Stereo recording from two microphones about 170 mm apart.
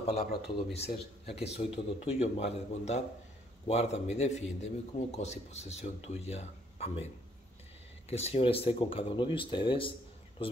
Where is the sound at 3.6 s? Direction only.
40° left (ahead or behind).